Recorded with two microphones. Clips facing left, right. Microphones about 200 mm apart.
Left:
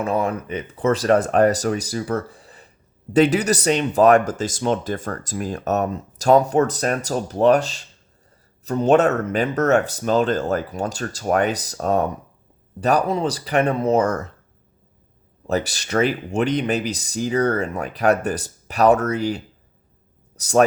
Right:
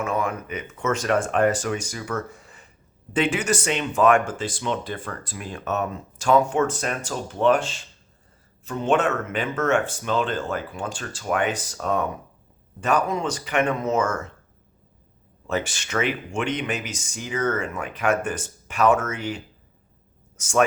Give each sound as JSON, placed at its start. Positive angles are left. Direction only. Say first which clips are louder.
{"t": 0.0, "sound": "speech", "louder": "left 4 dB", "side_deg": 35}
{"t": 15.4, "sound": "a man's voice", "louder": "left 4 dB", "side_deg": 40}